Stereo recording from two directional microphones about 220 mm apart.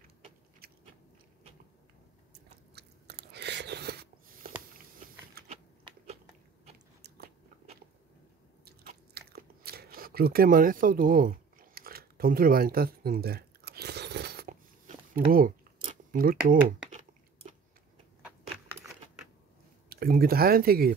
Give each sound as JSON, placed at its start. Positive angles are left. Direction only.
{"t": 0.6, "sound": "biting", "side_deg": -45}
{"t": 2.7, "sound": "chewing", "side_deg": -50}
{"t": 4.7, "sound": "biting", "side_deg": -40}
{"t": 5.5, "sound": "biting", "side_deg": -25}
{"t": 9.1, "sound": "chewing", "side_deg": -45}
{"t": 19.9, "sound": "speech", "side_deg": -45}